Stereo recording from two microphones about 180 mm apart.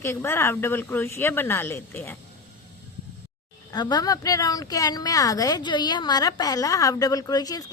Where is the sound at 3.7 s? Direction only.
25° left (ahead or behind).